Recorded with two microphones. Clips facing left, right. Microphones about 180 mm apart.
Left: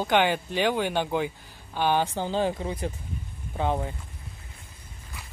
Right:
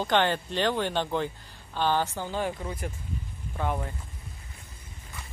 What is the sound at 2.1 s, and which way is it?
Speech, 30° left (ahead or behind).